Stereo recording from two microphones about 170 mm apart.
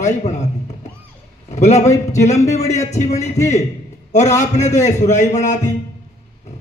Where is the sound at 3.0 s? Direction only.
40° left (ahead or behind).